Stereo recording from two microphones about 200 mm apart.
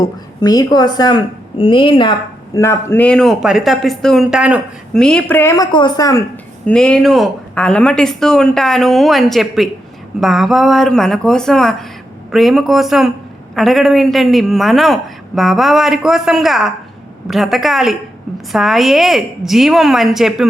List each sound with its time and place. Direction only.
0.0 s a woman's voice: 20° left (ahead or behind)
2.6 s speech: 10° left (ahead or behind)
6.7 s speech: 5° left (ahead or behind)